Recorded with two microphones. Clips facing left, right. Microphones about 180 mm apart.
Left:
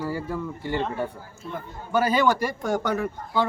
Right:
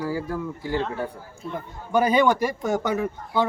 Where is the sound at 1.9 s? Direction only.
10° right (ahead or behind).